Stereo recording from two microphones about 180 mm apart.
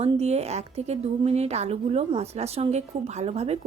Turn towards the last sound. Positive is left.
turn(degrees=-35)  # may be behind; listen again after turning